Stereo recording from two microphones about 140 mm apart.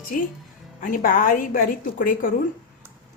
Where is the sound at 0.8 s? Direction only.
70° left (ahead or behind).